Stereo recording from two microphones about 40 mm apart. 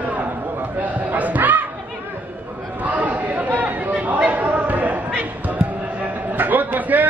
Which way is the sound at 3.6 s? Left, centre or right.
Right.